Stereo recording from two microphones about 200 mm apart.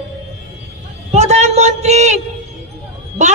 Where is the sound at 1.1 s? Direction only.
35° right (ahead or behind).